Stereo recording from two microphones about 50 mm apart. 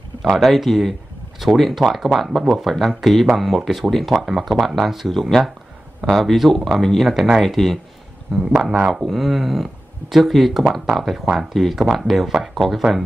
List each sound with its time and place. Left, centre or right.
0.2 s speech: centre
8.7 s speech: centre
9.0 s speech: centre